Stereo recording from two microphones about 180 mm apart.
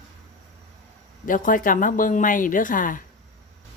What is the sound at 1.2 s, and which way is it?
Speech, 50° left (ahead or behind).